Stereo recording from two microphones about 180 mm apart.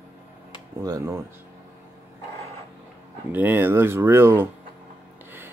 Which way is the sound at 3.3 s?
10° right (ahead or behind).